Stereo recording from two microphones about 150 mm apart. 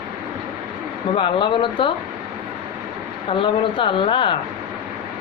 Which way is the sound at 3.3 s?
35° left (ahead or behind).